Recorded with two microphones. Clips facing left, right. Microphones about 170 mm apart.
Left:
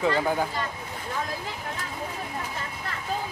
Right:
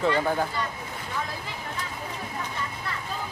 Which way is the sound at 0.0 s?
5° left (ahead or behind).